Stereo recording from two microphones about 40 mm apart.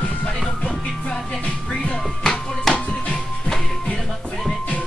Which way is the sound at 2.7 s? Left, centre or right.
Centre.